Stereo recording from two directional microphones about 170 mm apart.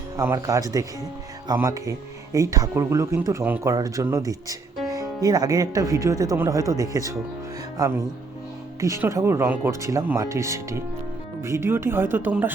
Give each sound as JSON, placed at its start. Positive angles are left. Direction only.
{"t": 0.2, "sound": "speech", "side_deg": -20}